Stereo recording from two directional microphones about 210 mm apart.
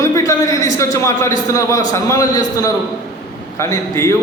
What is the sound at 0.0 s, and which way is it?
A man's voice, 15° left (ahead or behind).